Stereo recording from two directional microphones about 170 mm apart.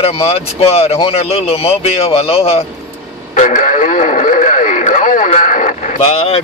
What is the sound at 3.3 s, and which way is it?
Speech, 45° left (ahead or behind).